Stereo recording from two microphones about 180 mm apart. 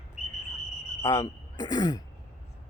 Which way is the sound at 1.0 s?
15° left (ahead or behind).